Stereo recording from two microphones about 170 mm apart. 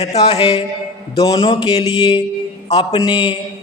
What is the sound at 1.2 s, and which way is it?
Speech, 25° left (ahead or behind).